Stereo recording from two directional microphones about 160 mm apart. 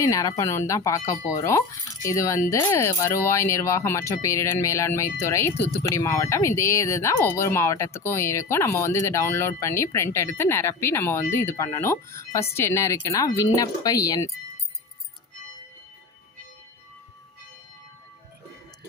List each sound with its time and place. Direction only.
0.0 s speech: 20° left (ahead or behind)